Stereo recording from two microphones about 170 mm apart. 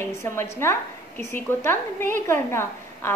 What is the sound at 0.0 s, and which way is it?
A woman's voice, 15° left (ahead or behind).